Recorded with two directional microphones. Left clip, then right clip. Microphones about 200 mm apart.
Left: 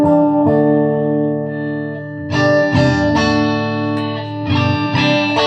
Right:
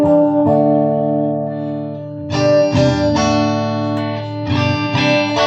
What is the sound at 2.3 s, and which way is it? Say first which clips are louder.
Music: right 1 dB; 20° right (ahead or behind).